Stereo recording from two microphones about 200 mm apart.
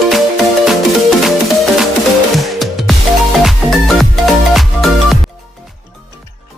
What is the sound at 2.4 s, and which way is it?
Music, centre (ahead or behind).